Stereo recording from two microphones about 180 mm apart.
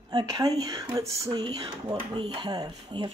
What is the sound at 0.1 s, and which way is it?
Speech, 20° right (ahead or behind).